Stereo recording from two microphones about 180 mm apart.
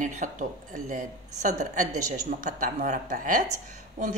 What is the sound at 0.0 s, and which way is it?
A woman's voice, 45° right (ahead or behind).